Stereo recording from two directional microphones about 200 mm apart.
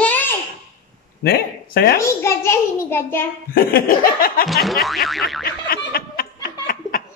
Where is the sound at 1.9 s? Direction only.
15° left (ahead or behind).